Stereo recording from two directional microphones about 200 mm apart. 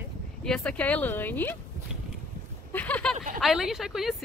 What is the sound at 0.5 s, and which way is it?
Speech, 5° left (ahead or behind).